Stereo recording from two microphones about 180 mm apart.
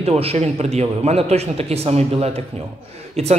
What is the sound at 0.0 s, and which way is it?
Speech, 35° right (ahead or behind).